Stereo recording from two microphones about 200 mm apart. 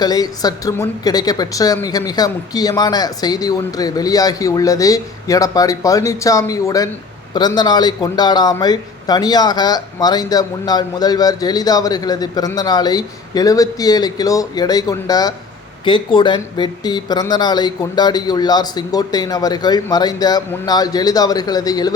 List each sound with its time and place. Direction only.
0.0 s a woman's voice: 20° left (ahead or behind)